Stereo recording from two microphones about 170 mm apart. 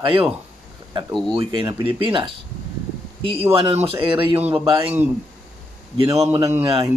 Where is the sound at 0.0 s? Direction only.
30° right (ahead or behind).